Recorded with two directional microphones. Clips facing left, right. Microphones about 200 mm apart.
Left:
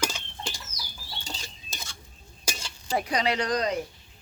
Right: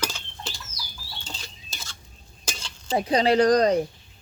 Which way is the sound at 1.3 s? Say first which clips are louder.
Left 2 dB; 10° left (ahead or behind).